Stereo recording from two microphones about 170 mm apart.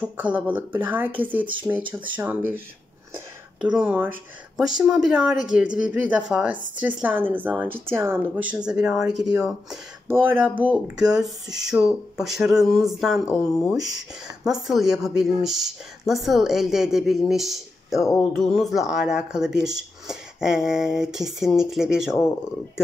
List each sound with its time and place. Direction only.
0.0 s speech: 10° right (ahead or behind)
3.6 s speech: 5° right (ahead or behind)
13.5 s speech: 15° left (ahead or behind)
13.7 s speech: 5° right (ahead or behind)